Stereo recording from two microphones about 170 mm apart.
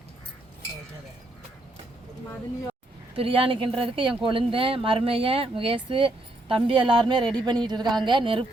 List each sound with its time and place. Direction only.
3.2 s speech: 35° right (ahead or behind)